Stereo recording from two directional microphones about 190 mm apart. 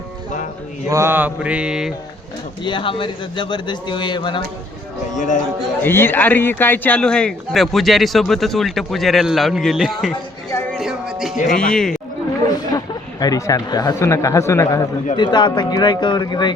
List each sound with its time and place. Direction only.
0.9 s mantra: 15° right (ahead or behind)
2.6 s speech: 25° left (ahead or behind)
5.1 s a man's voice: 40° left (ahead or behind)
5.8 s speech: 10° left (ahead or behind)
10.8 s music: 5° right (ahead or behind)
11.4 s speech: 5° left (ahead or behind)
12.5 s speech: 20° left (ahead or behind)